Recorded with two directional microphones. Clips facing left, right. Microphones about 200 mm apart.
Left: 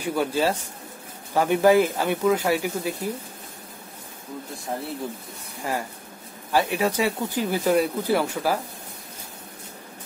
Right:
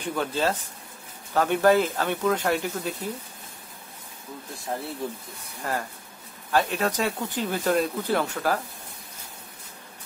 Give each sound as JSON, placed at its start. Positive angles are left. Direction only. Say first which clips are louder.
{"t": 0.0, "sound": "speech", "louder": "left 3 dB", "side_deg": 10}
{"t": 5.6, "sound": "speech", "louder": "left 2 dB", "side_deg": 10}